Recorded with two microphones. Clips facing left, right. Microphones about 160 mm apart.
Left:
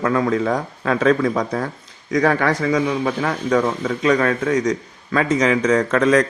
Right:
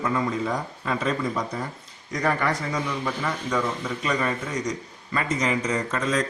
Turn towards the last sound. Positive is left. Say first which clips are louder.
# left 10 dB
turn(degrees=80)